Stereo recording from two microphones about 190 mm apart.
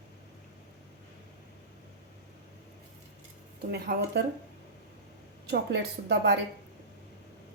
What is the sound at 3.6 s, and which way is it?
Speech, 60° right (ahead or behind).